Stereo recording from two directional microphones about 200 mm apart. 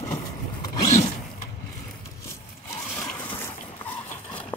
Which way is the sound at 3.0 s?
10° left (ahead or behind).